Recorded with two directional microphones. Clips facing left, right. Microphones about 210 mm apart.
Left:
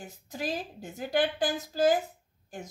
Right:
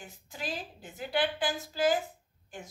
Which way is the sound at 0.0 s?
40° left (ahead or behind).